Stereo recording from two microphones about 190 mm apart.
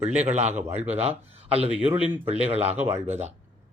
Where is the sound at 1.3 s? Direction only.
30° right (ahead or behind).